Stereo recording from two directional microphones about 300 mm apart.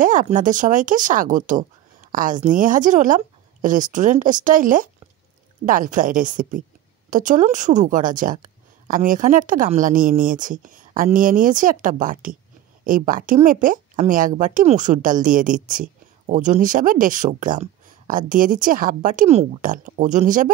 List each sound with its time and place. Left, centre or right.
0.0 s speech: right